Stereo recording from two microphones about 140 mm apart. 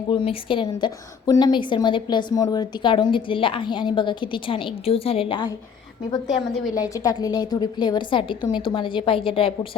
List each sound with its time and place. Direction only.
0.1 s a woman's voice: 35° left (ahead or behind)
6.7 s a woman's voice: 25° left (ahead or behind); by 9.5 s 40° left (ahead or behind)